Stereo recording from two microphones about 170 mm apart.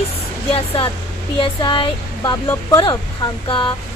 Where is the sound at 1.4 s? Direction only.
30° left (ahead or behind).